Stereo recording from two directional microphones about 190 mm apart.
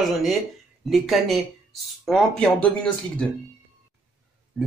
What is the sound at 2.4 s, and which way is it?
Speech, 5° left (ahead or behind).